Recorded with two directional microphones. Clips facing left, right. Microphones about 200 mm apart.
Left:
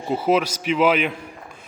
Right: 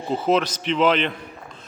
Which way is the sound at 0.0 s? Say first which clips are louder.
Left 1 dB; 10° left (ahead or behind).